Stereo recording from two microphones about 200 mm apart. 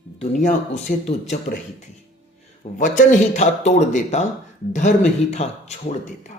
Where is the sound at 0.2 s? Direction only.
35° left (ahead or behind).